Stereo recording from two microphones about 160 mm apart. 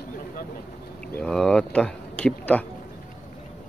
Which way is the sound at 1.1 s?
5° left (ahead or behind).